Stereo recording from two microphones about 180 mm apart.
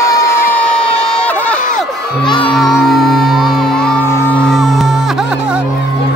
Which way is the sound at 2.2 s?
25° left (ahead or behind).